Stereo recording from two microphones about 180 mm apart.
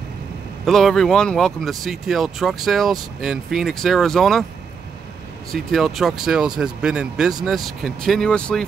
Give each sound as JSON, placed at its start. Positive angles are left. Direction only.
{"t": 0.7, "sound": "speech", "side_deg": 0}
{"t": 5.5, "sound": "speech", "side_deg": 0}